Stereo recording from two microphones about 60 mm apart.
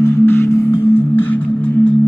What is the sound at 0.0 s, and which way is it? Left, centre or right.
Music, left.